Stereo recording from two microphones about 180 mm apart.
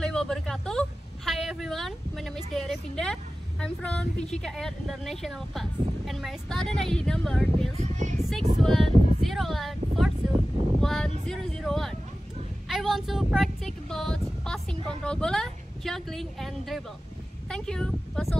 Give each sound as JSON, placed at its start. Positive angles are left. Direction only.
{"t": 0.0, "sound": "speech", "side_deg": 5}
{"t": 7.8, "sound": "speech", "side_deg": -35}
{"t": 8.6, "sound": "a woman's voice", "side_deg": 0}